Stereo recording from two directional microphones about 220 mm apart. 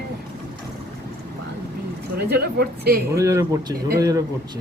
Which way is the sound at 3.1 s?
15° right (ahead or behind).